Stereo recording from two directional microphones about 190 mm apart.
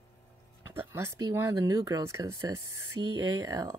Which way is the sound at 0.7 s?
10° right (ahead or behind).